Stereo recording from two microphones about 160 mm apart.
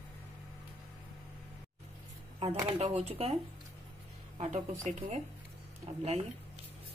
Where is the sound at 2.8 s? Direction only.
40° right (ahead or behind).